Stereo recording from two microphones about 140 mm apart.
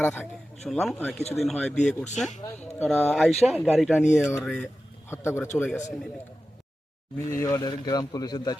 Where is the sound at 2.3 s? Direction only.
55° left (ahead or behind).